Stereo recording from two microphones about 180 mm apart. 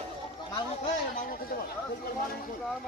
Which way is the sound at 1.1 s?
55° left (ahead or behind).